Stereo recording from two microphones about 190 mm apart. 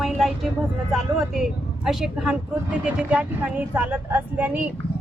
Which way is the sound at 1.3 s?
Centre (ahead or behind).